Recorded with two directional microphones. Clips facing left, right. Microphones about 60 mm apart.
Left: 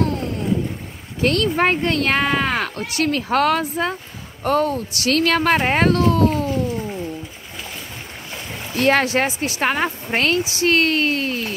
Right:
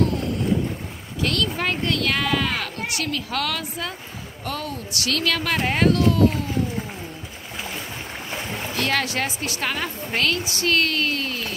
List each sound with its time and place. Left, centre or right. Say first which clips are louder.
1.2 s speech: left 6 dB; left
8.7 s speech: left 8 dB; left